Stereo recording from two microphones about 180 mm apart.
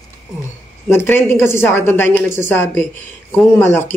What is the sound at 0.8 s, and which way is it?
A woman's voice, 10° left (ahead or behind).